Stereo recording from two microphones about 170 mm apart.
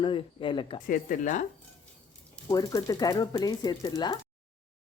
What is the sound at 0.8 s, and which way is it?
Speech, 55° left (ahead or behind).